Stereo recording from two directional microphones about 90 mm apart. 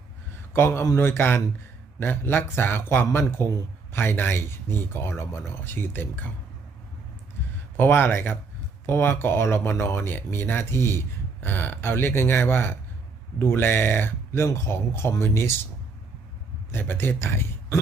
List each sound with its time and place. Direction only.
0.5 s speech: 25° left (ahead or behind)
7.8 s speech: 20° left (ahead or behind)
16.7 s speech: 25° left (ahead or behind)